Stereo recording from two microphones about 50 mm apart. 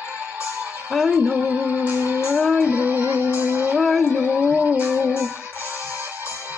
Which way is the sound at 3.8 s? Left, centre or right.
Centre.